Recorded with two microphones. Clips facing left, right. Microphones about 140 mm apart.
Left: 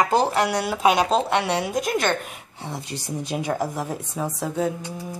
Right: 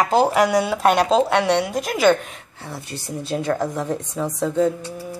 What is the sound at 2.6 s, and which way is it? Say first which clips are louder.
A woman's voice: left 1 dB; 20° left (ahead or behind).